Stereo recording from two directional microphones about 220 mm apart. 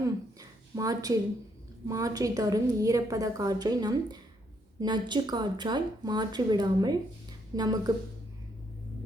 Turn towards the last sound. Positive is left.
turn(degrees=-20)  # may be behind; listen again after turning